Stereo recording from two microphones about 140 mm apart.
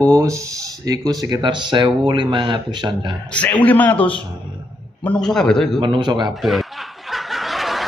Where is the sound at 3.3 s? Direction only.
10° left (ahead or behind).